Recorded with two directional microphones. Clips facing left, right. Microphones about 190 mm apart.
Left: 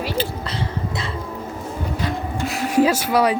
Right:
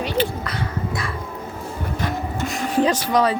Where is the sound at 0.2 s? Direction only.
25° left (ahead or behind).